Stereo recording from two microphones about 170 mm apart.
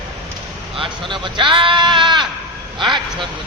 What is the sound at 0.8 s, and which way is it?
A man's voice, 30° right (ahead or behind).